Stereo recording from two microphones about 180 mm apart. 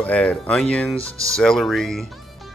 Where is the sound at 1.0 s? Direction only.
15° right (ahead or behind).